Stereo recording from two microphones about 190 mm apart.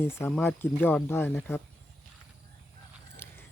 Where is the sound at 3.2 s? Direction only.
10° left (ahead or behind).